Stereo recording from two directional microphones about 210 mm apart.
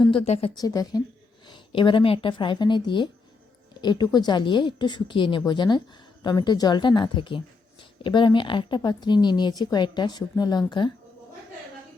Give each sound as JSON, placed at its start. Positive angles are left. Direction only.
{"t": 0.1, "sound": "speech", "side_deg": 25}